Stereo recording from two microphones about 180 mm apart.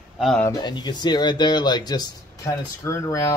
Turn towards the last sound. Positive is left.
turn(degrees=15)  # may be behind; listen again after turning